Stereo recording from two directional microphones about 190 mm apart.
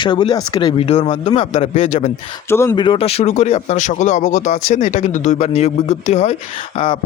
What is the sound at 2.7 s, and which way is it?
Speech, 25° left (ahead or behind).